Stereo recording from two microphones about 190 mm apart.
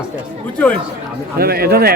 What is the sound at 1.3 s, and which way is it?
Speech, 55° right (ahead or behind).